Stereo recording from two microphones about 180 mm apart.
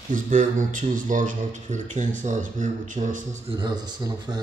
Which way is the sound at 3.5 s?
25° right (ahead or behind).